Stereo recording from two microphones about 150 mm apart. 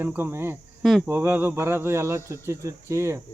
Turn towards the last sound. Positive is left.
turn(degrees=-20)  # may be behind; listen again after turning